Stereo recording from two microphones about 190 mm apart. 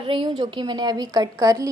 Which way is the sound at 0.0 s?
30° right (ahead or behind).